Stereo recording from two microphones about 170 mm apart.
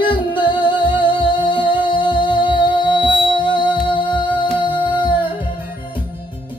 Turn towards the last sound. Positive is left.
turn(degrees=30)  # may be behind; listen again after turning